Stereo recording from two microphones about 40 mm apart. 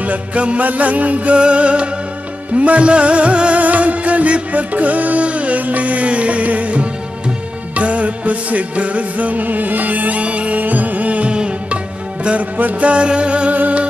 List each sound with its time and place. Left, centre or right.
0.0 s music: right
10.6 s music: right